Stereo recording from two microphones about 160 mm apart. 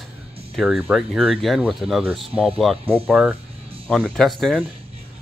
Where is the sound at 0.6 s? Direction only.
5° right (ahead or behind).